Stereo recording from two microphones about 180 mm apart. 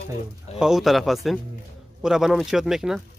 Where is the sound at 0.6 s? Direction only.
Centre (ahead or behind).